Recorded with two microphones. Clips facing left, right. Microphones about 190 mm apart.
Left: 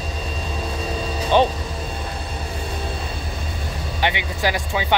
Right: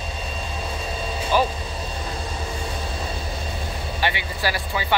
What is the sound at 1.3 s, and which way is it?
Speech, 25° left (ahead or behind).